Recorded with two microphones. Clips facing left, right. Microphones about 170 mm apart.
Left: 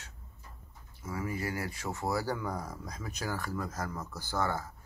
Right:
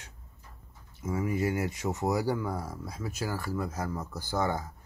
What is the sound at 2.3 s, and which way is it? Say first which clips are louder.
Speech: right 3 dB; 5° right (ahead or behind).